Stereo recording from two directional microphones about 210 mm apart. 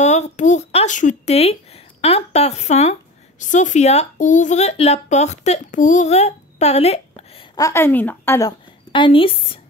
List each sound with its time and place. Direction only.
0.0 s speech: 35° left (ahead or behind)
7.5 s a woman's voice: 15° left (ahead or behind)